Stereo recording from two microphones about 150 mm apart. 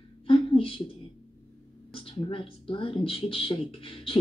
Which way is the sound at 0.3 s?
40° left (ahead or behind).